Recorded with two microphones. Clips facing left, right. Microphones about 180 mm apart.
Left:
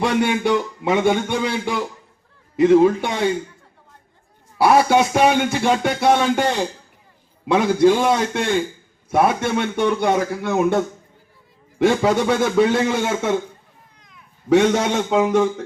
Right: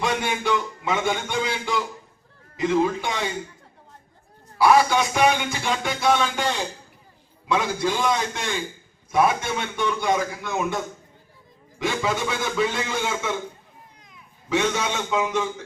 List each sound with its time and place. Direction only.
0.0 s speech: 60° left (ahead or behind)
4.5 s speech: 55° left (ahead or behind)
12.0 s speech: 55° left (ahead or behind)
14.5 s a man's voice: 55° left (ahead or behind)